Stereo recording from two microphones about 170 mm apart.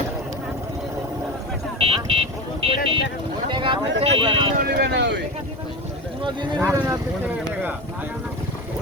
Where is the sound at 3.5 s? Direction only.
30° right (ahead or behind).